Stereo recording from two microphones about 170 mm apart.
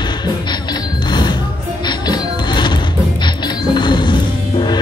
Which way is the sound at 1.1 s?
25° left (ahead or behind).